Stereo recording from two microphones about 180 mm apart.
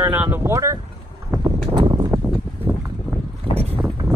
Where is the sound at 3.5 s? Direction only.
30° right (ahead or behind).